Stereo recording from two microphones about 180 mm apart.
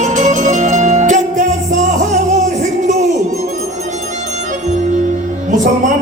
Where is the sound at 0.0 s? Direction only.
40° right (ahead or behind).